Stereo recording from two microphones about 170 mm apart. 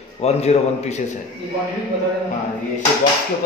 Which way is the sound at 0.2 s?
40° left (ahead or behind).